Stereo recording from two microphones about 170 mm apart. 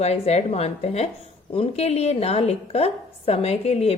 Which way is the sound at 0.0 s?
40° left (ahead or behind).